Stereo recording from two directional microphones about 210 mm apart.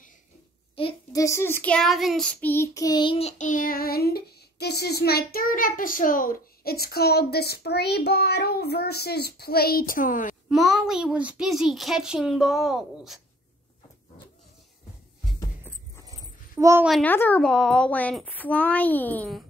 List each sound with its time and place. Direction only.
0.7 s child singing: 20° left (ahead or behind); by 10.3 s 40° left (ahead or behind)
10.5 s a child's voice: centre (ahead or behind)
16.5 s a child's voice: 10° right (ahead or behind)
16.9 s speech: 10° left (ahead or behind)